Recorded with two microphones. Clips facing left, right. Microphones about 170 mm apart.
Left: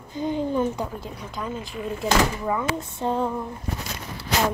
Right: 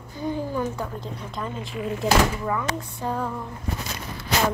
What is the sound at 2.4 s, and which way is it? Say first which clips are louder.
Speech: left 1 dB; 20° left (ahead or behind).